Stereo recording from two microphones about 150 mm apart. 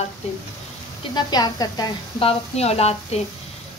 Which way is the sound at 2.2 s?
40° left (ahead or behind).